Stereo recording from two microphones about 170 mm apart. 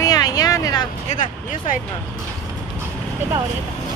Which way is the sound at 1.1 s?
45° left (ahead or behind).